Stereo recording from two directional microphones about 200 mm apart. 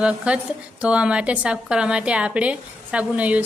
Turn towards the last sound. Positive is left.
turn(degrees=-5)  # may be behind; listen again after turning